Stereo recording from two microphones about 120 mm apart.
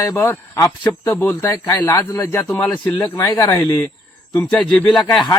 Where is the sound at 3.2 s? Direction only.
30° left (ahead or behind).